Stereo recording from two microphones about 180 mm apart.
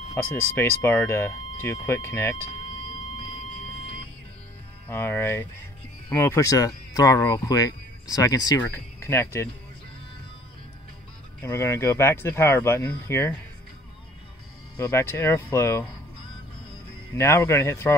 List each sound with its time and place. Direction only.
0.1 s speech: 10° left (ahead or behind)
4.8 s speech: 10° left (ahead or behind)
11.4 s speech: 15° left (ahead or behind)
14.8 s speech: 15° left (ahead or behind)
17.1 s speech: 15° left (ahead or behind)